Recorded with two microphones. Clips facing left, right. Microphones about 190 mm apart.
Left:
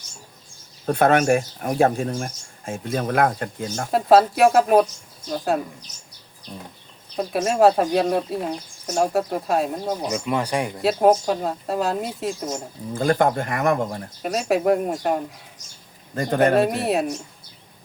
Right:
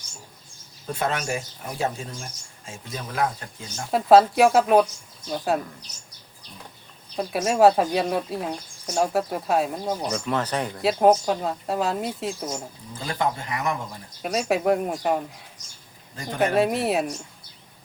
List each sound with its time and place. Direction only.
0.9 s speech: 60° left (ahead or behind)
3.9 s speech: centre (ahead or behind)
7.2 s speech: centre (ahead or behind)
10.1 s speech: 10° left (ahead or behind)
10.8 s speech: centre (ahead or behind)
12.9 s speech: 50° left (ahead or behind)
14.2 s speech: centre (ahead or behind)
16.1 s speech: 55° left (ahead or behind)
16.6 s speech: centre (ahead or behind)